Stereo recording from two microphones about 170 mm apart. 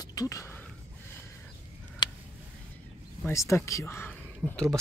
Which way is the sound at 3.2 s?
15° left (ahead or behind).